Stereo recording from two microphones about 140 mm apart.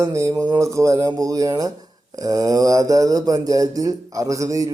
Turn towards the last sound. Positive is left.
turn(degrees=-25)  # may be behind; listen again after turning